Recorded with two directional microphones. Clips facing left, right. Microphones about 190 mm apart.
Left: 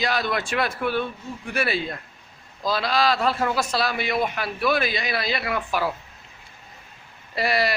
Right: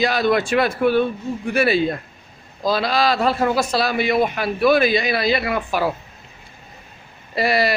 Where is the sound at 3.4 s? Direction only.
35° right (ahead or behind).